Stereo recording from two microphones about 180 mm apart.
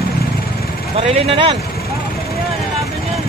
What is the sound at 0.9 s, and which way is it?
Speech, 35° right (ahead or behind).